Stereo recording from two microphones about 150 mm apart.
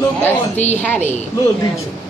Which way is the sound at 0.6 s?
50° left (ahead or behind).